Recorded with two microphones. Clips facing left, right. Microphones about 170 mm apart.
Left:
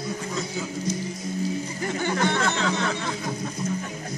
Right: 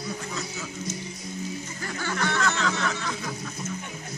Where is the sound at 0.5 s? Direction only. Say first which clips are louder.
Left 6 dB; 25° left (ahead or behind).